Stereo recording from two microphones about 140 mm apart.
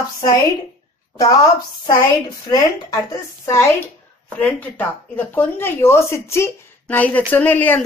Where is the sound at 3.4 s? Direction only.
20° left (ahead or behind).